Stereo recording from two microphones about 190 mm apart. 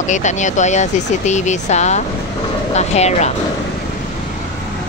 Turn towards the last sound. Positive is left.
turn(degrees=35)  # may be behind; listen again after turning